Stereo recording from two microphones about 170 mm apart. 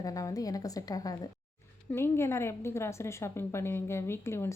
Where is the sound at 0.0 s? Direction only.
20° left (ahead or behind).